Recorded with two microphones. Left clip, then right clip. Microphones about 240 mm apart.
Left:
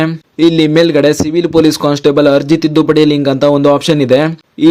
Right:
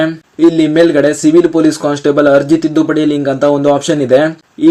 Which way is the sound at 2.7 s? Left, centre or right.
Left.